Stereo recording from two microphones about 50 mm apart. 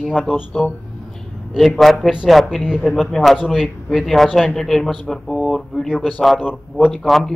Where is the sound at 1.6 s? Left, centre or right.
Centre.